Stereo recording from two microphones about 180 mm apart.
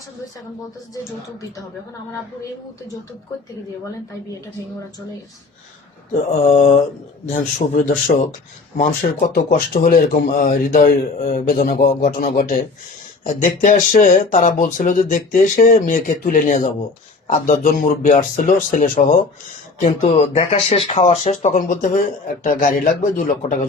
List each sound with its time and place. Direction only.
6.5 s speech: 45° left (ahead or behind)
19.8 s speech: 35° left (ahead or behind)